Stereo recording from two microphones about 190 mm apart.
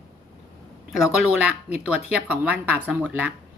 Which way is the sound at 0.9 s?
5° right (ahead or behind).